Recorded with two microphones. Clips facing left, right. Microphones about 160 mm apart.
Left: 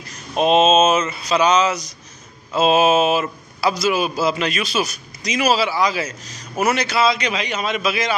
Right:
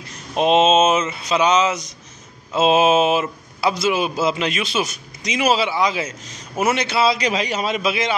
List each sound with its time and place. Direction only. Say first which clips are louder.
0.4 s a man's voice: even; 25° right (ahead or behind)